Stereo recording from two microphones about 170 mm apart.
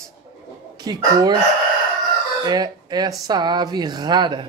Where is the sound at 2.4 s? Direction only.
25° right (ahead or behind).